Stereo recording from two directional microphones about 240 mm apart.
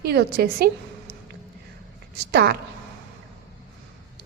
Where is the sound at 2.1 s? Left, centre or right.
Right.